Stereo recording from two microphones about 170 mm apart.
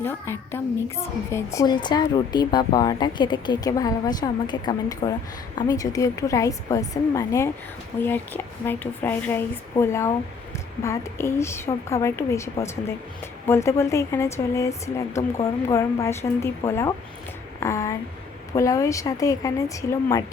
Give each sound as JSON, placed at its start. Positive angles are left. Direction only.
{"t": 0.0, "sound": "a woman's voice", "side_deg": 15}
{"t": 13.5, "sound": "a woman's voice", "side_deg": 15}